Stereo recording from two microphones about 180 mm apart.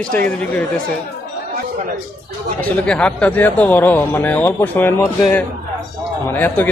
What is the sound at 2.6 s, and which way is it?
Speech, 5° left (ahead or behind).